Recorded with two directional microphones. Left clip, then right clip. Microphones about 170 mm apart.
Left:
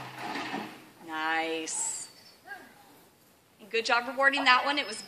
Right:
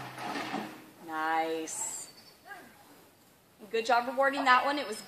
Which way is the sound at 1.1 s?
40° right (ahead or behind).